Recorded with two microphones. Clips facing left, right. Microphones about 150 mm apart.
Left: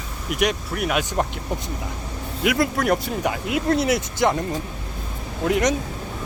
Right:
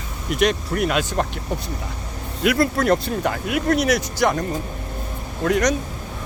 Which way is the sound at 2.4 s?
15° left (ahead or behind).